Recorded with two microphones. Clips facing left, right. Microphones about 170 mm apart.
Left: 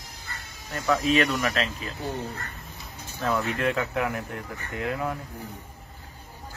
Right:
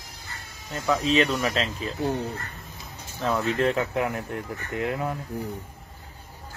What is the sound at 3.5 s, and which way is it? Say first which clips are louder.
Speech: right 2 dB; 20° right (ahead or behind).